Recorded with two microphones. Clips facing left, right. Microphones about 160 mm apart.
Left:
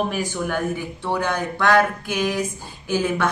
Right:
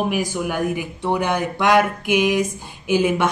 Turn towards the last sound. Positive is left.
turn(degrees=-15)  # may be behind; listen again after turning